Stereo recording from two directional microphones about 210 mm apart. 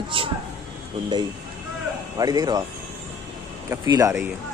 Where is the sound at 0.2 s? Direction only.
25° right (ahead or behind).